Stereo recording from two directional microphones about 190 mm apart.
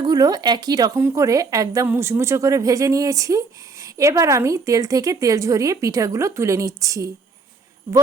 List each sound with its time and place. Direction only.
0.0 s speech: 20° right (ahead or behind)